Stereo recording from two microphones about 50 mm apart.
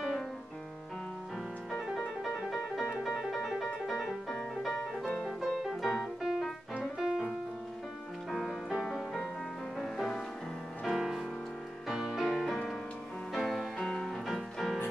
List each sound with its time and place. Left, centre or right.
3.4 s music: centre
8.3 s music: centre
12.3 s music: centre
13.4 s music: centre
13.7 s music: centre
14.0 s music: centre